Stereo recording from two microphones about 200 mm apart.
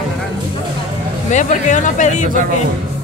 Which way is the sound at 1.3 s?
35° left (ahead or behind).